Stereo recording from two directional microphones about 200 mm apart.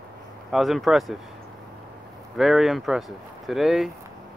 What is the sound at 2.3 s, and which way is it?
Speech, centre (ahead or behind).